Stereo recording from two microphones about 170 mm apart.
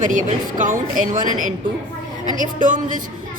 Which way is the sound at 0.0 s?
45° right (ahead or behind).